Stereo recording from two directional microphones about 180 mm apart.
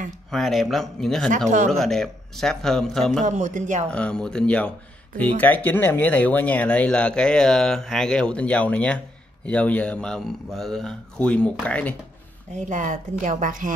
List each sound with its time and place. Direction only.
0.3 s speech: centre (ahead or behind)
3.3 s speech: 40° right (ahead or behind)
3.9 s speech: 5° left (ahead or behind)
12.5 s speech: 45° right (ahead or behind)